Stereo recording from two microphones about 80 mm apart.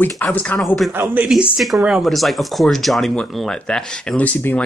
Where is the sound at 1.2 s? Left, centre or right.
Centre.